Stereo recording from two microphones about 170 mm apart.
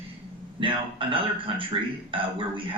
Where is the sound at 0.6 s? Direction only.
30° right (ahead or behind).